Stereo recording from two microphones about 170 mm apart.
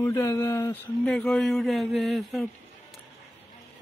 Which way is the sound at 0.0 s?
15° left (ahead or behind).